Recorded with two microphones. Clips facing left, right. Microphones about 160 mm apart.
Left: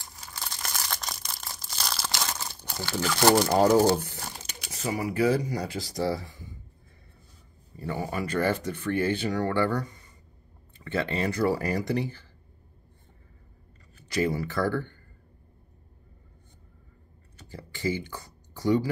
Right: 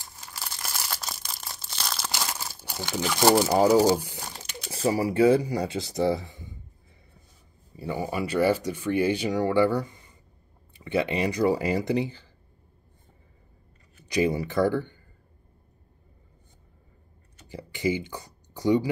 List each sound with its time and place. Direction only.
0.2 s crushing: 5° right (ahead or behind)
4.6 s speech: 30° right (ahead or behind)
7.7 s speech: 10° right (ahead or behind)
14.0 s speech: 15° right (ahead or behind)
17.5 s a sound: 15° right (ahead or behind)